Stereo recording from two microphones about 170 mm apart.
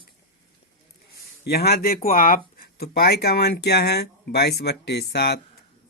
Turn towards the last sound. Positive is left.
turn(degrees=70)  # may be behind; listen again after turning